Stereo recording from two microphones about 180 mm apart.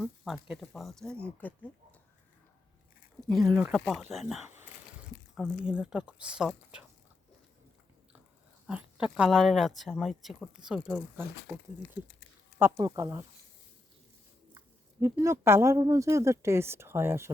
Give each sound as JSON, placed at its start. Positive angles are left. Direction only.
{"t": 0.0, "sound": "speech", "side_deg": -5}
{"t": 3.2, "sound": "speech", "side_deg": 0}
{"t": 8.6, "sound": "speech", "side_deg": -5}
{"t": 12.7, "sound": "speech", "side_deg": -25}
{"t": 15.0, "sound": "speech", "side_deg": -15}